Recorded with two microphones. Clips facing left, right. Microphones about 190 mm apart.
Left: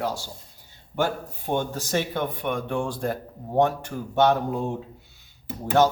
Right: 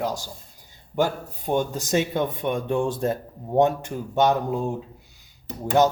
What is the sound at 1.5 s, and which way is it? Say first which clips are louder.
Speech: right 3 dB; 15° right (ahead or behind).